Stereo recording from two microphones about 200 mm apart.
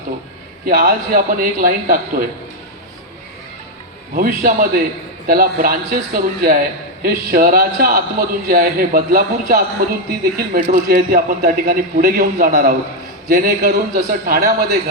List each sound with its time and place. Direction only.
0.6 s a man's voice: 45° right (ahead or behind)
4.1 s a man's voice: 45° right (ahead or behind)